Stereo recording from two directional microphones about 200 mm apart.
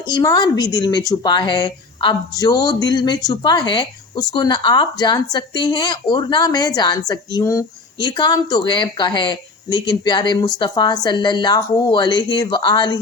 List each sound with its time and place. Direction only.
0.1 s speech: 20° left (ahead or behind)